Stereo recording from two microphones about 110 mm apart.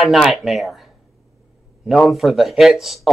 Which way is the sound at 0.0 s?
Centre (ahead or behind).